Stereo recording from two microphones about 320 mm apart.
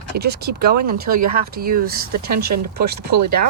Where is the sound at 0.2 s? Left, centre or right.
Right.